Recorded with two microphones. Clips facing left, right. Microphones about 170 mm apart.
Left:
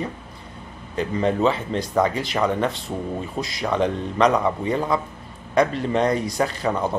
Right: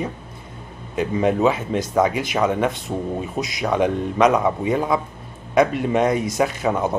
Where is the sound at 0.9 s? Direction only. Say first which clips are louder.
Right 2 dB; 10° right (ahead or behind).